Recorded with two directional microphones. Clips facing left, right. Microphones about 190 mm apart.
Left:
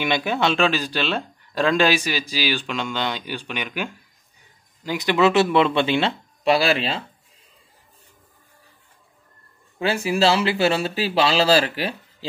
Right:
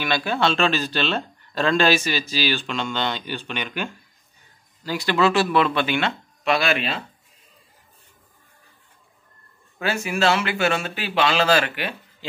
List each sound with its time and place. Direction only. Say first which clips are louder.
0.0 s speech: left 1 dB; 20° left (ahead or behind)
9.8 s speech: left 3 dB; 30° left (ahead or behind)